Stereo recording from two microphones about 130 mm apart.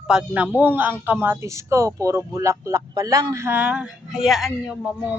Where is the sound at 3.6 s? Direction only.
10° right (ahead or behind).